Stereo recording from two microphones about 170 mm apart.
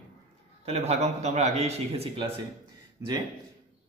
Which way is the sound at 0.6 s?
40° right (ahead or behind).